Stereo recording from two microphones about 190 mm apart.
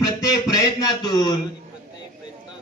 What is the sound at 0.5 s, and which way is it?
Speech, 20° left (ahead or behind).